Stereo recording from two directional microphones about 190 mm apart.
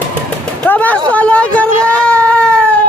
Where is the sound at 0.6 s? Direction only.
10° left (ahead or behind).